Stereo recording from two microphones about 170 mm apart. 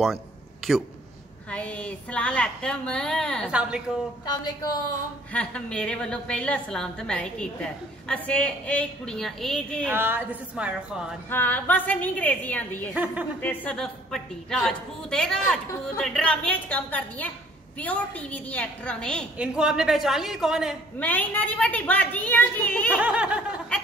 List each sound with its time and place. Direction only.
1.5 s a woman's voice: 10° left (ahead or behind)
3.4 s a woman's voice: 5° right (ahead or behind)
4.3 s a woman's voice: 25° left (ahead or behind)
5.3 s a woman's voice: 5° left (ahead or behind)
9.8 s speech: 10° right (ahead or behind)
11.2 s a woman's voice: 10° left (ahead or behind)
12.9 s speech: 10° right (ahead or behind)
13.4 s a woman's voice: 5° left (ahead or behind)
19.3 s a woman's voice: 5° right (ahead or behind)
21.0 s a woman's voice: 10° left (ahead or behind)
22.9 s speech: 5° right (ahead or behind)